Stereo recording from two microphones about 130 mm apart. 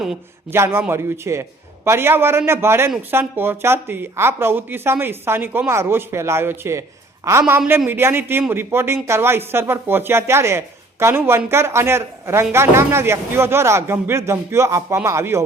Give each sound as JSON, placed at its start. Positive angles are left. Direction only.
{"t": 0.5, "sound": "a woman's voice", "side_deg": -20}